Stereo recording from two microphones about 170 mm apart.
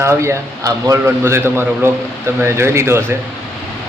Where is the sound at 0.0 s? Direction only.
15° right (ahead or behind).